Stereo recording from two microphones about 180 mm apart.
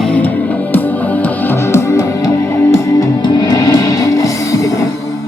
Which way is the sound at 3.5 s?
20° left (ahead or behind).